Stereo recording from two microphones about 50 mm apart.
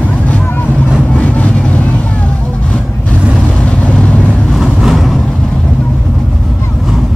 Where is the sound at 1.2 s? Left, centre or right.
Left.